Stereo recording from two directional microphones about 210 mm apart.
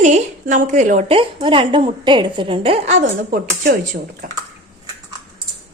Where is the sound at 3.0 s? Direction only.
40° right (ahead or behind).